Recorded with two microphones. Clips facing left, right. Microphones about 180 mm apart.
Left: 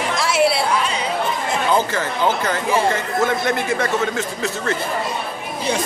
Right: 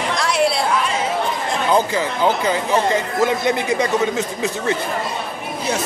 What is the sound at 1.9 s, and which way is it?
A man's voice, 15° right (ahead or behind).